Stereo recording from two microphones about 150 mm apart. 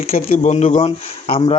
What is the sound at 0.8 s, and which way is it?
Speech, 40° left (ahead or behind).